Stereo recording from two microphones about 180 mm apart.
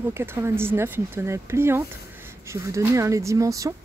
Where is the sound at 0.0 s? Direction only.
15° right (ahead or behind).